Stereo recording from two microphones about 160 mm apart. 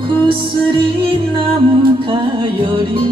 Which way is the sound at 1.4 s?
30° right (ahead or behind).